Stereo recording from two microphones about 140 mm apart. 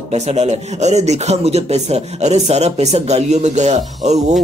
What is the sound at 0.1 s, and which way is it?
Speech, 50° right (ahead or behind).